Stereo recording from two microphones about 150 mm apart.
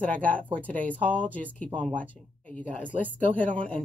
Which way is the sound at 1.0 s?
35° right (ahead or behind).